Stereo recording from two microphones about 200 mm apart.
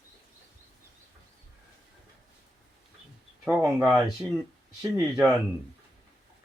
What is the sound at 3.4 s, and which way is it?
Speech, 10° right (ahead or behind).